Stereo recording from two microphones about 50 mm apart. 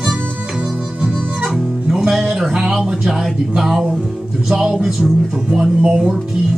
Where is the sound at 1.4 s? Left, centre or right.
Centre.